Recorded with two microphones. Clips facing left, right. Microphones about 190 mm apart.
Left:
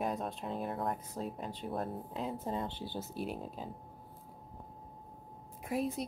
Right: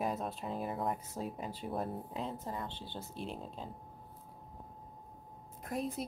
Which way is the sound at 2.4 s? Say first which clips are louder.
Left 4 dB; 20° left (ahead or behind).